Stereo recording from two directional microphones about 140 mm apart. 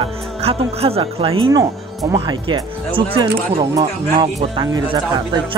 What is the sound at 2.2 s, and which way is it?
Speech, 35° right (ahead or behind).